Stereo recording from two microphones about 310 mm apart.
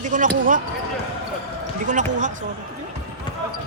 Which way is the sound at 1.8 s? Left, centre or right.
Right.